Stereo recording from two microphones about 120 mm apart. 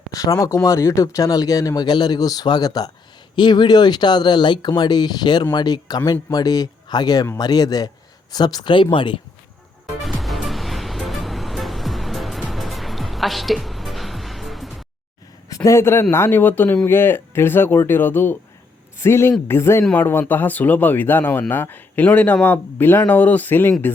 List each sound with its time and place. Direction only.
0.3 s a man's voice: 30° left (ahead or behind); by 9.2 s 45° left (ahead or behind)
10.0 s music: centre (ahead or behind)
15.4 s a man's voice: 25° left (ahead or behind)